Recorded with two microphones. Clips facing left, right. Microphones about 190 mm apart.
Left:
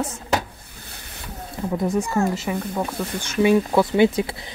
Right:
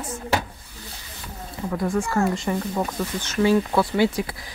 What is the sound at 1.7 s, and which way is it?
Speech, 20° left (ahead or behind).